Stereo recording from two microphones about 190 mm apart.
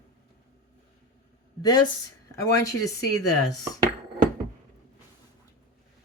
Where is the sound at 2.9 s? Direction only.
20° left (ahead or behind).